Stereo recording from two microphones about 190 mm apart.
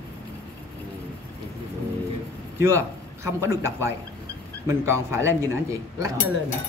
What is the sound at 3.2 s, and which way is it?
Speech, 15° right (ahead or behind).